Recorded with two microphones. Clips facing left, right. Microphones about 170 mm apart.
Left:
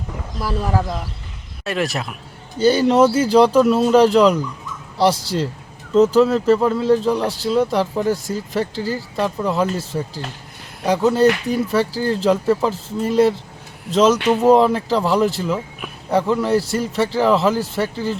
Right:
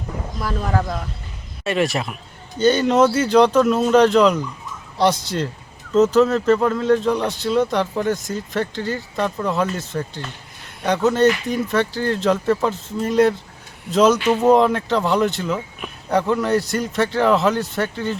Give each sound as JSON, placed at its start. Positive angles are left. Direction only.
{"t": 0.3, "sound": "speech", "side_deg": 5}
{"t": 6.1, "sound": "speech", "side_deg": 5}
{"t": 11.2, "sound": "speech", "side_deg": 35}
{"t": 11.7, "sound": "speech", "side_deg": 5}